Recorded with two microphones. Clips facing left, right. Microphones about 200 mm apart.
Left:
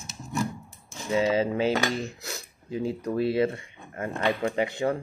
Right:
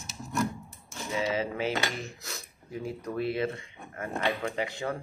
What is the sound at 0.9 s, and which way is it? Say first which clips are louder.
Cutlery: left 6 dB; 30° left (ahead or behind).